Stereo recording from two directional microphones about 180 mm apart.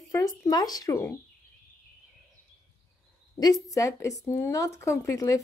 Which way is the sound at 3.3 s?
20° left (ahead or behind).